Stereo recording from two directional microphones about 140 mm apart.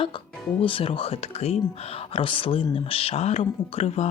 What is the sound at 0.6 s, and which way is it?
Speech, 40° left (ahead or behind).